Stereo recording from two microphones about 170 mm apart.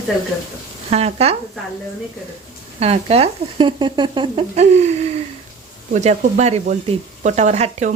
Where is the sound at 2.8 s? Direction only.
35° right (ahead or behind).